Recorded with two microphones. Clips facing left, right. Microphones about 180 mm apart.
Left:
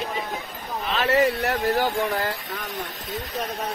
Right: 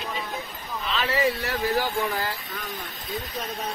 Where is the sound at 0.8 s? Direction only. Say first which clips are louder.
Left 3 dB; 45° left (ahead or behind).